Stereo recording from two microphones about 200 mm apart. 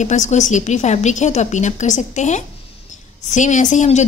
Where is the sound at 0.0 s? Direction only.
35° left (ahead or behind).